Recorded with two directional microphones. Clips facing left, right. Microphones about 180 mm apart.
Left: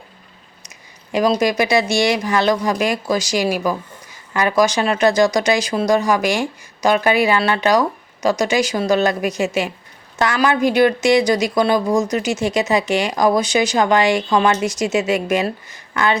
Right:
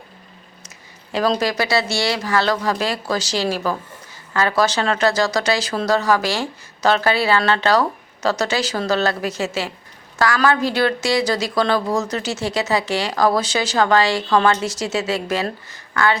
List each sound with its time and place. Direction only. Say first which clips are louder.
1.1 s speech: left 3 dB; 15° left (ahead or behind)